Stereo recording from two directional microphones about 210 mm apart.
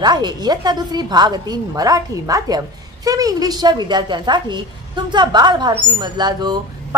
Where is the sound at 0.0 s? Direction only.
20° right (ahead or behind).